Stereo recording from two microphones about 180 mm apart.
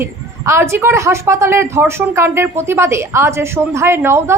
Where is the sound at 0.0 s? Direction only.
15° right (ahead or behind).